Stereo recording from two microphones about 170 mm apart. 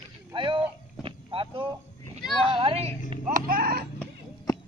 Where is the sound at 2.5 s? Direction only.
30° right (ahead or behind).